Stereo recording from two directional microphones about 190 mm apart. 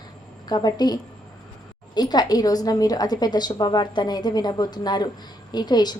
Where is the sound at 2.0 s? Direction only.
20° left (ahead or behind).